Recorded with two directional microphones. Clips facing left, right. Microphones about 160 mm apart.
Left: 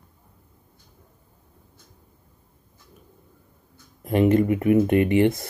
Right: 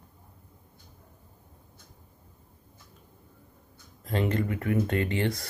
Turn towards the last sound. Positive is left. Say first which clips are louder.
# left 10 dB
turn(degrees=20)  # may be behind; listen again after turning